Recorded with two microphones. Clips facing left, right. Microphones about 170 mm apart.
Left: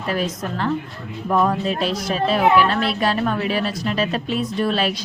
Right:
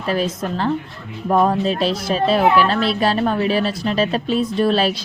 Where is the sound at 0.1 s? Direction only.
30° right (ahead or behind).